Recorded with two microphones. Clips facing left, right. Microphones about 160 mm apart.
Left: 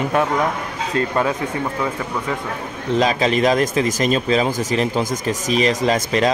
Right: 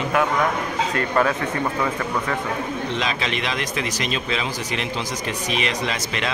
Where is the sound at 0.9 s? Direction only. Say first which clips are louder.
Left 2 dB; 20° left (ahead or behind).